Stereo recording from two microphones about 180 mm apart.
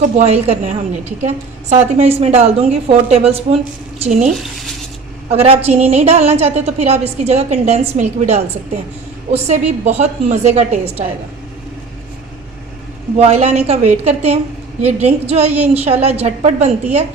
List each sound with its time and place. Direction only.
0.2 s a woman's voice: 35° right (ahead or behind)
5.5 s a woman's voice: 35° right (ahead or behind)
13.1 s a woman's voice: 35° right (ahead or behind)